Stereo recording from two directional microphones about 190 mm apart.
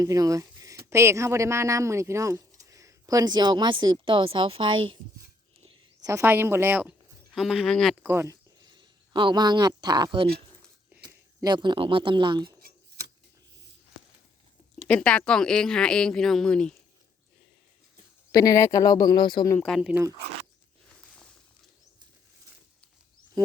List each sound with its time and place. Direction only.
0.0 s speech: 20° right (ahead or behind); by 7.9 s centre (ahead or behind)
8.0 s speech: 15° right (ahead or behind)
14.8 s speech: 5° left (ahead or behind)
18.3 s speech: 20° left (ahead or behind)
19.5 s speech: centre (ahead or behind)